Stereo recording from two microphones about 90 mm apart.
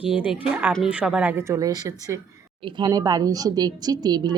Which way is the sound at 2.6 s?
55° right (ahead or behind).